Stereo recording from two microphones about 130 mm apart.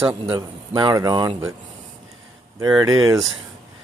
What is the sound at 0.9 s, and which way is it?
Speech, 30° right (ahead or behind).